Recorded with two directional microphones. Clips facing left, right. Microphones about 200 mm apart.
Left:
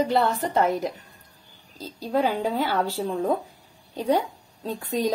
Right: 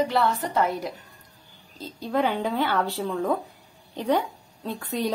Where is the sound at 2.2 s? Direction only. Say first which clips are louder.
Left 1 dB; 35° left (ahead or behind).